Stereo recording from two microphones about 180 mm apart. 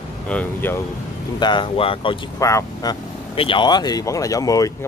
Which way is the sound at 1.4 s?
25° left (ahead or behind).